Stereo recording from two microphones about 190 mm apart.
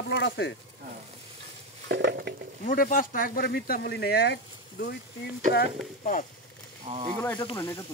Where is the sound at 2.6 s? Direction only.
45° left (ahead or behind).